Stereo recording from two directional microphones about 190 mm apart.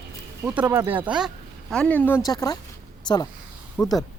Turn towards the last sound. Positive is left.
turn(degrees=10)  # may be behind; listen again after turning